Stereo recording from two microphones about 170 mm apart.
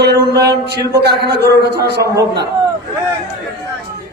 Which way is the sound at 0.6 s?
75° right (ahead or behind).